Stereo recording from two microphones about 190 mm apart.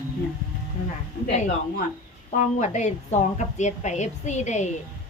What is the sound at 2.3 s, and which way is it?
Speech, 40° left (ahead or behind).